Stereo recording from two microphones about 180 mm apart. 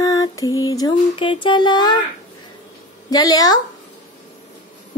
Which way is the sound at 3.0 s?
20° left (ahead or behind).